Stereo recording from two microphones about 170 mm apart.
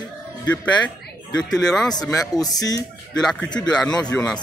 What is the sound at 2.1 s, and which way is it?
Speech, 20° left (ahead or behind).